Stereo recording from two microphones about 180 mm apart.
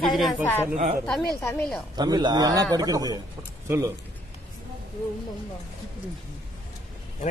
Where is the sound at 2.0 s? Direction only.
25° right (ahead or behind).